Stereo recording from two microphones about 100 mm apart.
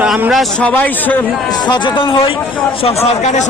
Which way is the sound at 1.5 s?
45° left (ahead or behind).